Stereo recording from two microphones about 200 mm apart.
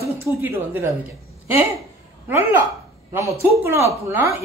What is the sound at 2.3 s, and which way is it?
A woman's voice, 10° right (ahead or behind).